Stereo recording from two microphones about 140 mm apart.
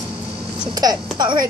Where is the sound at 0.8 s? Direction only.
30° right (ahead or behind).